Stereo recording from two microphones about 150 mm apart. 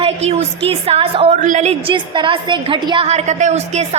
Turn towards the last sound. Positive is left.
turn(degrees=-50)  # may be behind; listen again after turning